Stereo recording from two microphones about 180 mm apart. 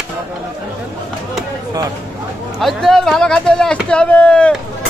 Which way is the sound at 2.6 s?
Centre (ahead or behind).